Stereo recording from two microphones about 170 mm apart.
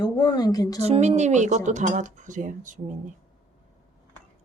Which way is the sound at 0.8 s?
40° right (ahead or behind).